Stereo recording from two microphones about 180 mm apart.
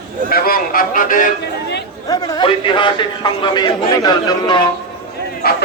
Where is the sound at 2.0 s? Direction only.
20° left (ahead or behind).